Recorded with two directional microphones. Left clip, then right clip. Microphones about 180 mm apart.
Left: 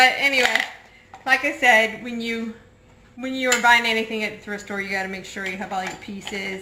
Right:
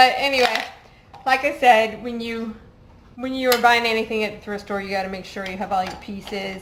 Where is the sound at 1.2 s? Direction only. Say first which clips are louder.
Right 2 dB; 25° right (ahead or behind).